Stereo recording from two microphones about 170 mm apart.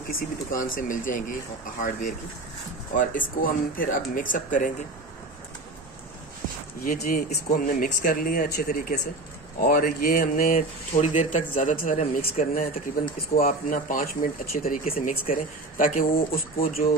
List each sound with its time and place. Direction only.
0.1 s speech: 55° left (ahead or behind)
6.9 s speech: 55° left (ahead or behind)
15.0 s speech: 35° left (ahead or behind)
15.3 s speech: 55° left (ahead or behind)